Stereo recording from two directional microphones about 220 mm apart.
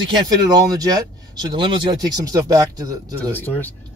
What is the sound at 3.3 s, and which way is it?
Speech, 10° left (ahead or behind).